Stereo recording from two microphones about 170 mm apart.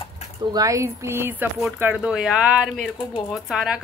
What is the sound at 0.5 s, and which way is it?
Speech, 20° right (ahead or behind).